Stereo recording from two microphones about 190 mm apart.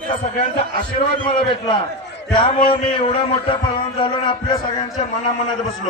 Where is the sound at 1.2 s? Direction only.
25° left (ahead or behind).